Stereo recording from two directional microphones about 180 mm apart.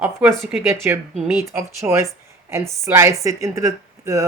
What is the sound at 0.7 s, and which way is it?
Speech, 15° right (ahead or behind).